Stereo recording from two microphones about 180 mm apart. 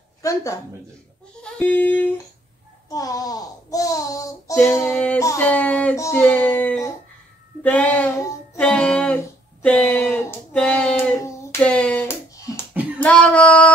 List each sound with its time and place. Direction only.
0.2 s a woman's voice: 20° left (ahead or behind)
1.4 s a sound: 10° left (ahead or behind)
2.9 s child singing: 20° left (ahead or behind)
4.9 s speech: 5° left (ahead or behind)
8.5 s a sound: 5° left (ahead or behind)
11.1 s hands: 10° left (ahead or behind)
13.0 s female singing: 5° left (ahead or behind)